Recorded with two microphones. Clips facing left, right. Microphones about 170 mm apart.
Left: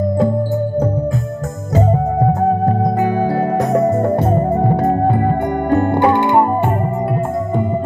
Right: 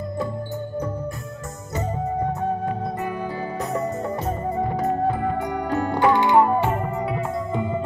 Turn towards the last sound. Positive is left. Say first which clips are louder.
# left 3 dB
turn(degrees=50)  # may be behind; listen again after turning